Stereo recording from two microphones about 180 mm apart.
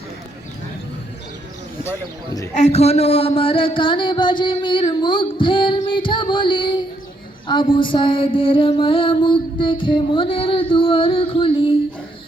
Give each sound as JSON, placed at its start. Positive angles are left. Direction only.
{"t": 1.8, "sound": "speech", "side_deg": 15}
{"t": 2.5, "sound": "music", "side_deg": 40}